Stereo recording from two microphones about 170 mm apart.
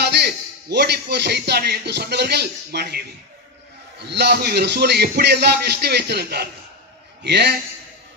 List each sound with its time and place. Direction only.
0.0 s a sound: 75° right (ahead or behind)
0.7 s a man's voice: 80° right
7.2 s a man's voice: 85° right